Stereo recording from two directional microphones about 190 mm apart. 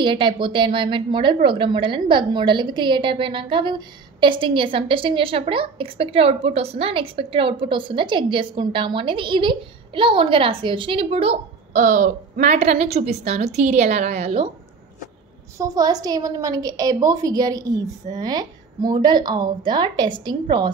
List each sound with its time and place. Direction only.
0.0 s a woman's voice: 25° right (ahead or behind)
15.5 s a woman's voice: 20° right (ahead or behind)